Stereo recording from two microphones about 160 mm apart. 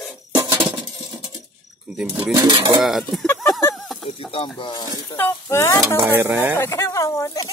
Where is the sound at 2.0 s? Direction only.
5° right (ahead or behind).